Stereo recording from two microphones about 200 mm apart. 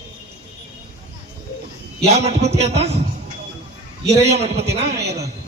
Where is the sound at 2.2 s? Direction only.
30° right (ahead or behind).